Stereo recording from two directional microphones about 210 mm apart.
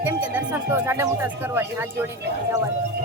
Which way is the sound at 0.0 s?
10° right (ahead or behind).